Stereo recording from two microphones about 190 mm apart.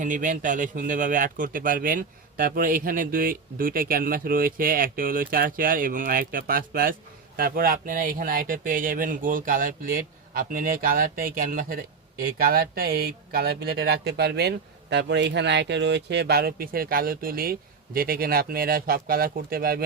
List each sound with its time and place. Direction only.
0.0 s speech: 45° right (ahead or behind)